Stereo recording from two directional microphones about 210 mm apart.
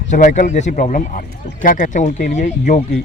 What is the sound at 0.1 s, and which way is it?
Speech, 35° left (ahead or behind).